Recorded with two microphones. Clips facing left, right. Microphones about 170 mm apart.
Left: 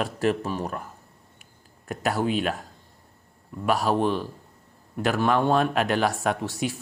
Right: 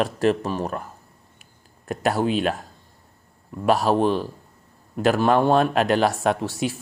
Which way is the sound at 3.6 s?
40° right (ahead or behind).